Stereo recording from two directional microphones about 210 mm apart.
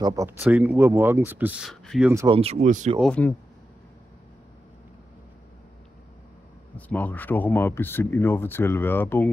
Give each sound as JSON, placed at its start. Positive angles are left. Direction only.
{"t": 0.0, "sound": "speech", "side_deg": -15}
{"t": 2.2, "sound": "speech", "side_deg": -25}
{"t": 3.0, "sound": "speech", "side_deg": 5}
{"t": 6.9, "sound": "speech", "side_deg": 10}